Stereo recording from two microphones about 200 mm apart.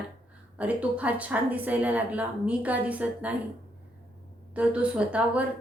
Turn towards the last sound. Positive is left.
turn(degrees=-5)  # may be behind; listen again after turning